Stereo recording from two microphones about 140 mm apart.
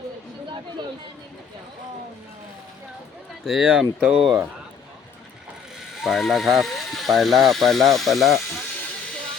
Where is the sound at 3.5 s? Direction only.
5° right (ahead or behind).